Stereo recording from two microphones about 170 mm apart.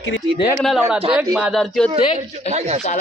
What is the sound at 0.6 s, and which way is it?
A man's voice, centre (ahead or behind).